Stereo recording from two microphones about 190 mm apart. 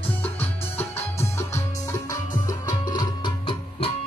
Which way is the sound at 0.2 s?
10° left (ahead or behind).